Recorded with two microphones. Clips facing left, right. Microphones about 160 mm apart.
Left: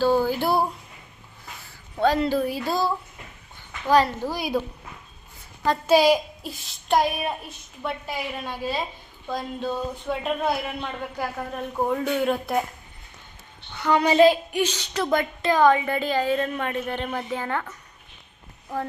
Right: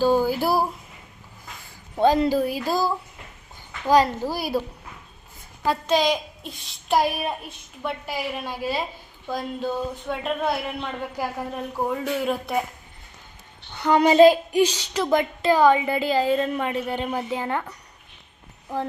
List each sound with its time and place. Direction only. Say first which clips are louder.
0.0 s a sound: right 1 dB; 10° right (ahead or behind)
2.0 s speech: right 2 dB; 15° right (ahead or behind)
5.8 s speech: left 6 dB; 10° left (ahead or behind)
11.2 s speech: right 1 dB; 10° right (ahead or behind)
14.0 s child singing: right 3 dB; 35° right (ahead or behind)
14.6 s speech: right 5 dB; 10° right (ahead or behind)